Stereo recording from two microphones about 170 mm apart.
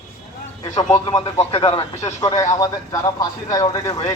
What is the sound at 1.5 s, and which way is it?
Speech, 35° left (ahead or behind).